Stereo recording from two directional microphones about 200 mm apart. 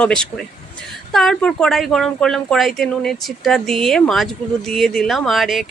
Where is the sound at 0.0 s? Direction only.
5° left (ahead or behind).